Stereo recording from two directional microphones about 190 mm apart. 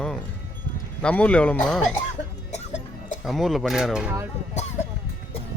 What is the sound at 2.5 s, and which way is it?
Music, 35° left (ahead or behind).